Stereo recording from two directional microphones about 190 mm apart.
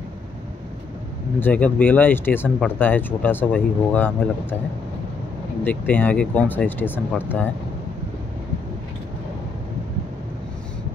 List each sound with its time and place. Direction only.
1.4 s speech: 10° left (ahead or behind)
5.6 s speech: 10° left (ahead or behind)